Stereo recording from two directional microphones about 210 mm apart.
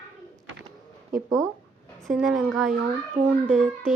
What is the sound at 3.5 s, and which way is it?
Speech, 35° right (ahead or behind).